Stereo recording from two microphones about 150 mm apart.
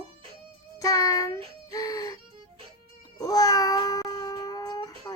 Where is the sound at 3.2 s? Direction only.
25° left (ahead or behind).